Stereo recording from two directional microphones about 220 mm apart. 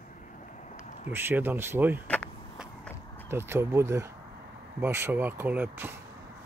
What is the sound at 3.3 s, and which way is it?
Speech, 10° right (ahead or behind).